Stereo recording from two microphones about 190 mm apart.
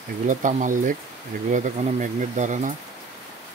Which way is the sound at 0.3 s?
40° right (ahead or behind).